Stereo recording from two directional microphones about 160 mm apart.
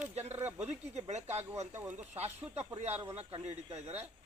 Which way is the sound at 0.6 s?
45° right (ahead or behind).